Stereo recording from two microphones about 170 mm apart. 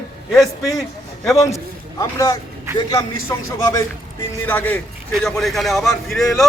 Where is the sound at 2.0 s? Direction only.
20° left (ahead or behind); by 6.5 s centre (ahead or behind).